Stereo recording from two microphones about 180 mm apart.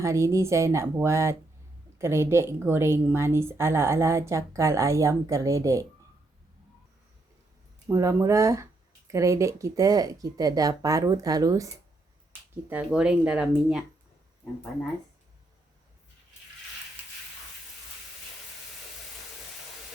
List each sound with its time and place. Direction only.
0.0 s a woman's voice: 15° right (ahead or behind)
7.9 s a woman's voice: 15° right (ahead or behind)
12.7 s speech: 5° right (ahead or behind)